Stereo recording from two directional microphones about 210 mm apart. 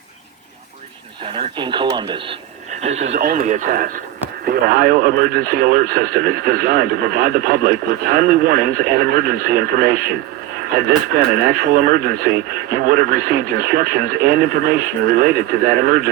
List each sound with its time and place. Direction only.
1.2 s speech: 25° right (ahead or behind)
2.8 s speech: 30° right (ahead or behind)
3.2 s speech: 45° right (ahead or behind)